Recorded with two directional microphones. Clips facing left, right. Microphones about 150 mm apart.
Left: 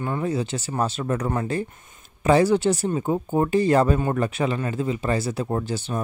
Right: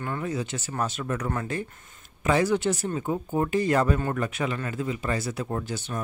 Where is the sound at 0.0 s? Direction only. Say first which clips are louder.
Left 5 dB; 20° left (ahead or behind).